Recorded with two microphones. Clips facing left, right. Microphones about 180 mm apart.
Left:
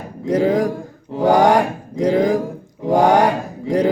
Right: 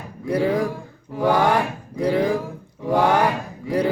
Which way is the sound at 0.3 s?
45° left (ahead or behind).